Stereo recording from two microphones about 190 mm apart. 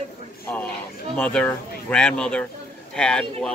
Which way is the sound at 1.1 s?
10° left (ahead or behind).